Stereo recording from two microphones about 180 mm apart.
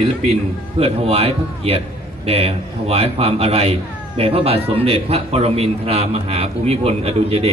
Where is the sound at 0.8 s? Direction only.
35° right (ahead or behind).